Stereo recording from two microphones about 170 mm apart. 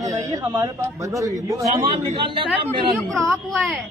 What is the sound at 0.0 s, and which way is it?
A man's voice, 20° right (ahead or behind).